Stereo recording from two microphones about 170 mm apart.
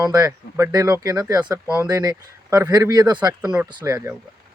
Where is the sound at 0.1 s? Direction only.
20° right (ahead or behind).